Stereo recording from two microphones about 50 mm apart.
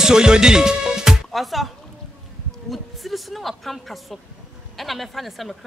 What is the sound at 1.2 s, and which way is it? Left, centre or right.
Speech, centre.